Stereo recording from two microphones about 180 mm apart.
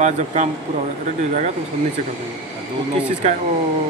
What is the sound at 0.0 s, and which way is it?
Speech, 40° right (ahead or behind).